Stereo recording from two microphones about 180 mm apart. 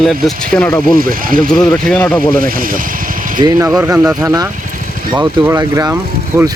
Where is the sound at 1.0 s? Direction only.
50° right (ahead or behind).